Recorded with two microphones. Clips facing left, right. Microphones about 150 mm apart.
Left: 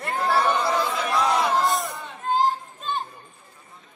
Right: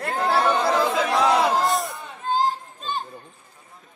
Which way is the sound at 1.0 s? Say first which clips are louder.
Right 3 dB; 90° right.